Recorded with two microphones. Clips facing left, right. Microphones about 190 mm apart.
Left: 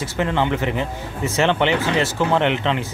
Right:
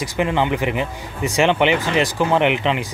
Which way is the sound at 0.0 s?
15° right (ahead or behind).